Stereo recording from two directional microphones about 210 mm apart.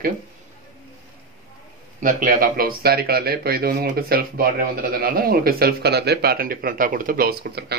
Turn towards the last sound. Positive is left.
turn(degrees=-50)  # may be behind; listen again after turning